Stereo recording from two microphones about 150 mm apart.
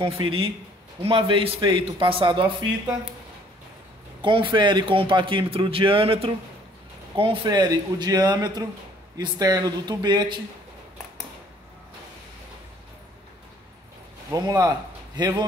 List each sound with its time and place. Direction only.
0.0 s a man's voice: 35° right (ahead or behind)
4.2 s a man's voice: 35° right (ahead or behind)
14.3 s a man's voice: 25° right (ahead or behind)